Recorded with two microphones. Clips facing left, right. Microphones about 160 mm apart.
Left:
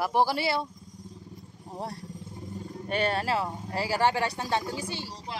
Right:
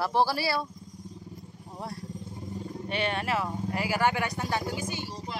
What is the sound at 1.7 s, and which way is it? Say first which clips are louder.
Vehicle: left 2 dB; 35° left (ahead or behind).